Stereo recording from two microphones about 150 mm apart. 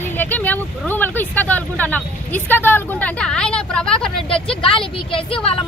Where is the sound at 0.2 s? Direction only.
10° left (ahead or behind).